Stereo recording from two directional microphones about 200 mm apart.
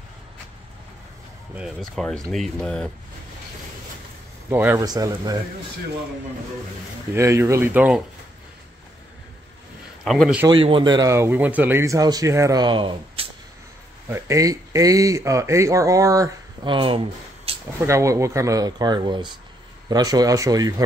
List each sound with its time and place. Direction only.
1.5 s speech: centre (ahead or behind)
4.5 s speech: 10° right (ahead or behind)
7.2 s speech: 15° right (ahead or behind)
10.0 s speech: centre (ahead or behind)
10.5 s speech: 25° right (ahead or behind)
14.0 s speech: 15° right (ahead or behind)
17.7 s speech: 15° right (ahead or behind)